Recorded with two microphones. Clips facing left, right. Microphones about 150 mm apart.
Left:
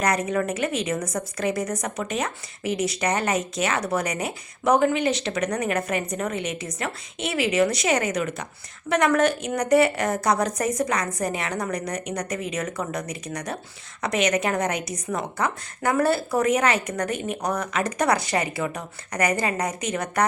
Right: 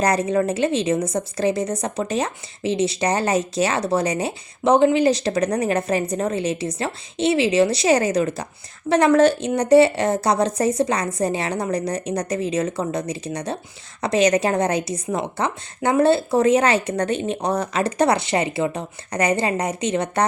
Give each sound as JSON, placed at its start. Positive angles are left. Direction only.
{"t": 0.0, "sound": "a woman's voice", "side_deg": -30}